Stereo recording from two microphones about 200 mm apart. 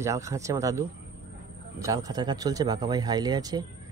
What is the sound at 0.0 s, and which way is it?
Speech, 15° right (ahead or behind).